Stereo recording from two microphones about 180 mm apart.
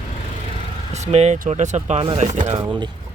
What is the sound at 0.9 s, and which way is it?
Speech, 40° right (ahead or behind).